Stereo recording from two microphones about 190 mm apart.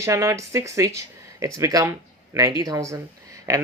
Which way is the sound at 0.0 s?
15° right (ahead or behind).